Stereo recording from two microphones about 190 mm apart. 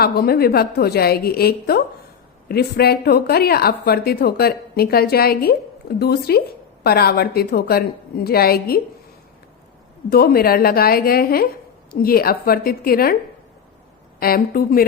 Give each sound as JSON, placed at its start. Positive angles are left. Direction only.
{"t": 0.0, "sound": "a woman's voice", "side_deg": 55}
{"t": 10.1, "sound": "a woman's voice", "side_deg": 55}
{"t": 14.2, "sound": "a woman's voice", "side_deg": 50}